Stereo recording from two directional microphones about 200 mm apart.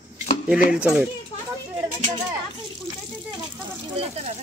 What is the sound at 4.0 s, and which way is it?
Speech, 30° right (ahead or behind).